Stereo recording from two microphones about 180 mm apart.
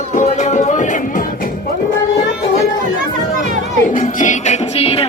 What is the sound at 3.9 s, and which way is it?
Music, 45° left (ahead or behind).